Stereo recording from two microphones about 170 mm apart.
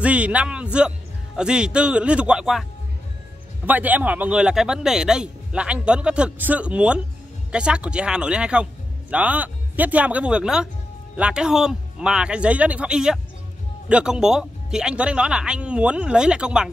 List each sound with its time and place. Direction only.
0.0 s speech: 10° right (ahead or behind)
3.6 s speech: 10° right (ahead or behind)